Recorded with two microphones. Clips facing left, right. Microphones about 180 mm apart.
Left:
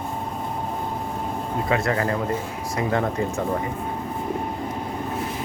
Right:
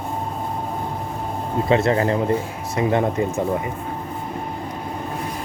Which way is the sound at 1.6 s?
25° right (ahead or behind).